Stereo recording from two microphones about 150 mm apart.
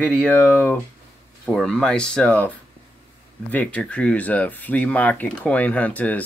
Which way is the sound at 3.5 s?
10° left (ahead or behind).